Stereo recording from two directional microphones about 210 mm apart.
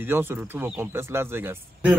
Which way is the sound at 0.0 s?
10° right (ahead or behind).